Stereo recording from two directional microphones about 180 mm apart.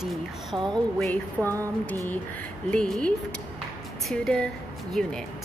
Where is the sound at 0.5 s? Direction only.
25° right (ahead or behind).